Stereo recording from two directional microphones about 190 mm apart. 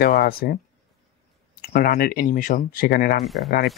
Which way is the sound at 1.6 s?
50° left (ahead or behind).